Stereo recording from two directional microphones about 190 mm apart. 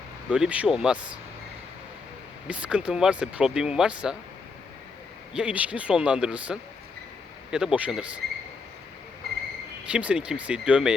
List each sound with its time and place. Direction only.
0.3 s speech: 5° right (ahead or behind)
2.5 s speech: 5° right (ahead or behind)
5.3 s speech: 5° right (ahead or behind)
9.9 s speech: 5° right (ahead or behind)